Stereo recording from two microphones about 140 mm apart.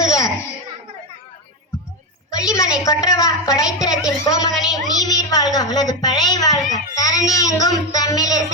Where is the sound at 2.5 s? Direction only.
25° left (ahead or behind).